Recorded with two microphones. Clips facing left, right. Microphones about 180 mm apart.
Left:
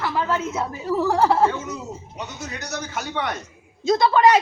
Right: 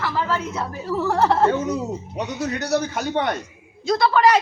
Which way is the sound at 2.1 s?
70° right (ahead or behind).